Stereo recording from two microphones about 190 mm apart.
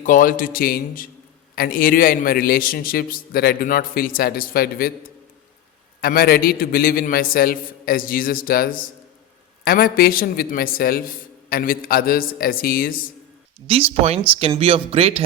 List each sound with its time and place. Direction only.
0.0 s a man's voice: 45° left (ahead or behind)
6.0 s a man's voice: 50° left (ahead or behind)
13.7 s speech: 30° right (ahead or behind)